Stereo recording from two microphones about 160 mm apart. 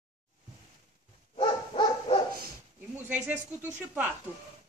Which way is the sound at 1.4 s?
30° left (ahead or behind).